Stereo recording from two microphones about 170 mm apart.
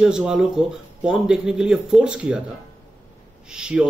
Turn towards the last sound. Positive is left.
turn(degrees=-5)  # may be behind; listen again after turning